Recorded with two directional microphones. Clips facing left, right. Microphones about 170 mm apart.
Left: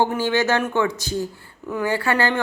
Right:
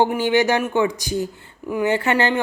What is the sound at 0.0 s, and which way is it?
A woman's voice, 15° right (ahead or behind).